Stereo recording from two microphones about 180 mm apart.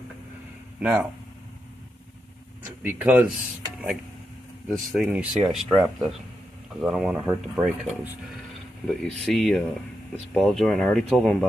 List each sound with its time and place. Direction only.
0.7 s speech: 10° right (ahead or behind)
2.8 s speech: 10° right (ahead or behind)
4.6 s speech: 5° right (ahead or behind)
8.8 s speech: 5° left (ahead or behind)